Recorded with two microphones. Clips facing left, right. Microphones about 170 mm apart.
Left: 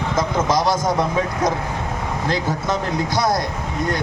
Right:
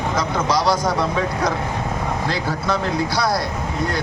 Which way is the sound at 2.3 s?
20° left (ahead or behind).